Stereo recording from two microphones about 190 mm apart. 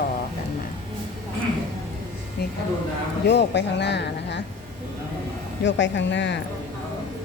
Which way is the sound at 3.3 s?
65° left (ahead or behind).